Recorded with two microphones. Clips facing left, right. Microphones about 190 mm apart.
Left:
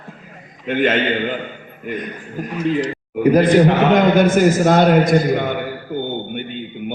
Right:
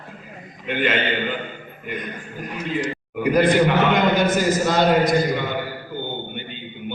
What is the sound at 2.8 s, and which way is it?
A man's voice, 40° left (ahead or behind).